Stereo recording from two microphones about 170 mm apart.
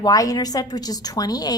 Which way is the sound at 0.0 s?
20° left (ahead or behind).